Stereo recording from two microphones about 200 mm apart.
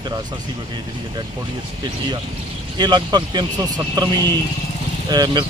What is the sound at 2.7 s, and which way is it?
Speech, 20° right (ahead or behind).